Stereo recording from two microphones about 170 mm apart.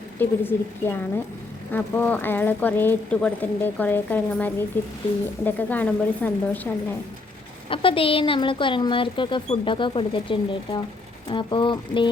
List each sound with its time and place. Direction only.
0.2 s speech: 10° left (ahead or behind)
7.7 s speech: 30° left (ahead or behind)